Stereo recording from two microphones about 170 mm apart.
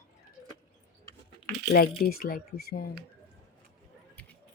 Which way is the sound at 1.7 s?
65° left (ahead or behind).